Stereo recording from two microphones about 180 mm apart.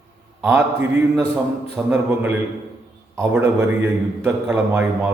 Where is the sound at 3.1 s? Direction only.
15° right (ahead or behind).